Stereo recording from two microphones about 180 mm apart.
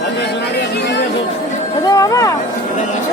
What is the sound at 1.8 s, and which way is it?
Music, 20° left (ahead or behind).